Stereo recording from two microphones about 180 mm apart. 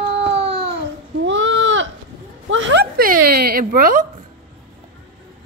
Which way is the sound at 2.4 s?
90° right.